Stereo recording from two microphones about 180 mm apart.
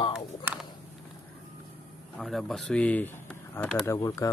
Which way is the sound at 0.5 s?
10° right (ahead or behind).